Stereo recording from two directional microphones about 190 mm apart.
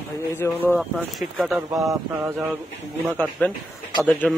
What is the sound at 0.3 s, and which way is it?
Speech, 10° left (ahead or behind).